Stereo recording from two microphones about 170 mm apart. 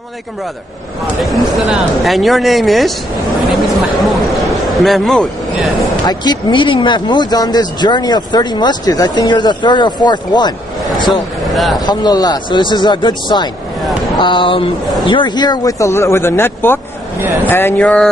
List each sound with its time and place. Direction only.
1.2 s speech: centre (ahead or behind)
6.0 s speech: 25° left (ahead or behind)
11.5 s speech: centre (ahead or behind)
11.8 s speech: 25° left (ahead or behind); by 18.1 s 5° left (ahead or behind)